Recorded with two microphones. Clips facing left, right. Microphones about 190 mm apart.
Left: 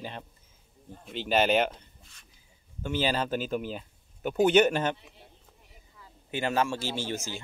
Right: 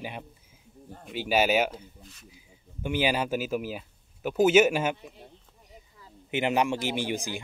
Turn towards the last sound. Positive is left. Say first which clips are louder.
# right 3 dB
turn(degrees=-15)  # may be behind; listen again after turning